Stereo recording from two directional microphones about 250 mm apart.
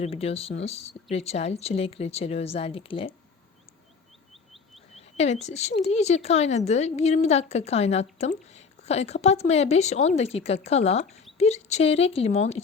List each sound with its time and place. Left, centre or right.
0.0 s speech: left
4.9 s speech: left